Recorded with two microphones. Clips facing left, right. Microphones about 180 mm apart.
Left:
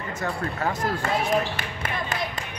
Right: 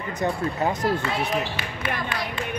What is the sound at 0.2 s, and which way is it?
Speech, 20° right (ahead or behind).